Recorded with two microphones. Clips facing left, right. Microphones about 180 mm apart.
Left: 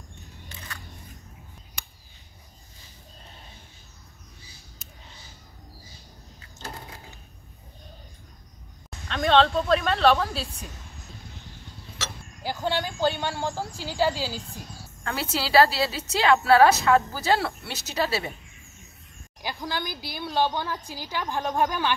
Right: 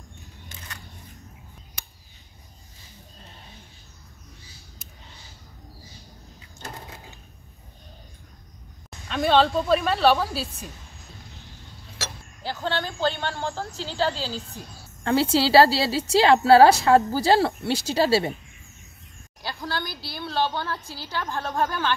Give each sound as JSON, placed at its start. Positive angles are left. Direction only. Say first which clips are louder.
{"t": 9.1, "sound": "speech", "louder": "right 1 dB", "side_deg": -5}
{"t": 12.4, "sound": "a woman's voice", "louder": "left 1 dB", "side_deg": 10}
{"t": 15.0, "sound": "a woman's voice", "louder": "right 9 dB", "side_deg": -30}
{"t": 19.4, "sound": "a woman's voice", "louder": "even", "side_deg": 15}